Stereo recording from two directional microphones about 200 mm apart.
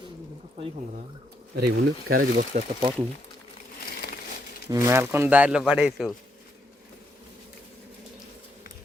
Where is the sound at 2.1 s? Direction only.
45° right (ahead or behind).